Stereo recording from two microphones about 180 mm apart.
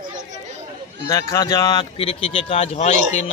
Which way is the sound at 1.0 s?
20° left (ahead or behind).